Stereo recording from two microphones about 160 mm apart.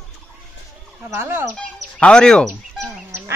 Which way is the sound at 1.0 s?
15° right (ahead or behind).